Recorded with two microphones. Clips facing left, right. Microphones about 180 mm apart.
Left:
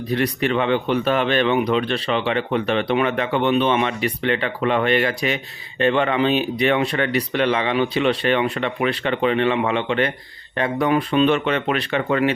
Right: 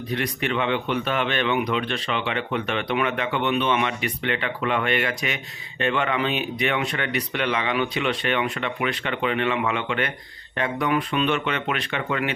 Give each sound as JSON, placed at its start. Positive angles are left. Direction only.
{"t": 0.1, "sound": "speech", "side_deg": 35}